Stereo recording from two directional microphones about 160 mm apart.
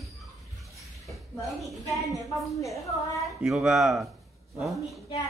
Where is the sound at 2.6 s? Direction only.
20° left (ahead or behind).